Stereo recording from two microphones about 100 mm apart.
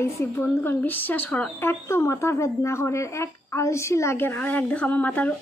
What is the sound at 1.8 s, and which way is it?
A woman's voice, 25° left (ahead or behind).